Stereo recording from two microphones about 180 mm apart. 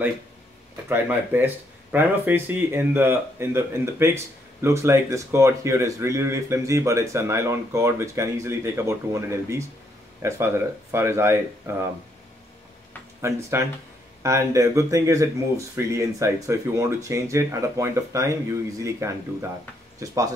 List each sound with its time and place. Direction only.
0.8 s speech: 10° right (ahead or behind)
13.2 s speech: 15° right (ahead or behind)